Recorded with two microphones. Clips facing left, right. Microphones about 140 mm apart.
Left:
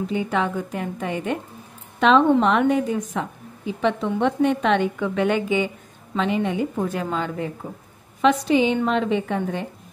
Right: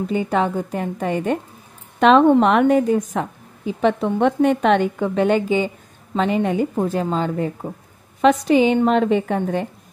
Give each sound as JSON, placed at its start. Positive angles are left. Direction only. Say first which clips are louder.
{"t": 0.1, "sound": "a woman's voice", "louder": "right 5 dB", "side_deg": -40}
{"t": 2.0, "sound": "a woman's voice", "louder": "right 4 dB", "side_deg": -55}
{"t": 2.9, "sound": "a woman's voice", "louder": "right 5 dB", "side_deg": -40}
{"t": 6.8, "sound": "a woman's voice", "louder": "right 4 dB", "side_deg": -30}
{"t": 8.2, "sound": "a woman's voice", "louder": "right 3 dB", "side_deg": -45}